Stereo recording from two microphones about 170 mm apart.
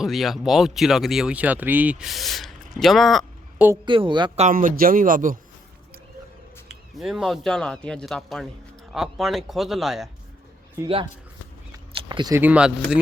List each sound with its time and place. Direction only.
0.0 s speech: centre (ahead or behind)
3.8 s speech: 30° right (ahead or behind)
4.4 s a man's voice: 55° right (ahead or behind)
7.0 s speech: centre (ahead or behind)
10.8 s speech: 15° right (ahead or behind)
11.7 s a sound: 25° right (ahead or behind)
12.4 s speech: 5° right (ahead or behind)